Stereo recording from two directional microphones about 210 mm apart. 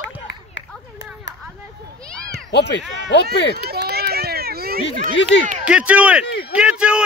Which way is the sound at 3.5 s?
50° right (ahead or behind).